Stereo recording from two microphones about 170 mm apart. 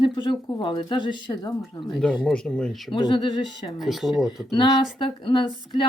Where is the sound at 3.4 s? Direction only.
Centre (ahead or behind).